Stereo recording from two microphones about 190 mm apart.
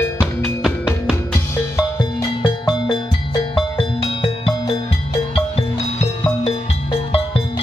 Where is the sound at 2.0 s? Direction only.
20° left (ahead or behind).